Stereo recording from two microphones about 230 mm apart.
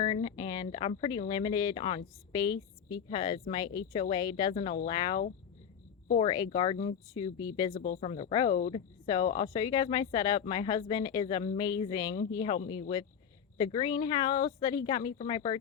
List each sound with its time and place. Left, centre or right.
0.0 s speech: left
7.7 s speech: left
13.6 s speech: left